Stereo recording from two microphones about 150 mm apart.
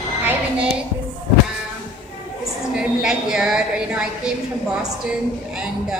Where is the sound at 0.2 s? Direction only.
10° right (ahead or behind).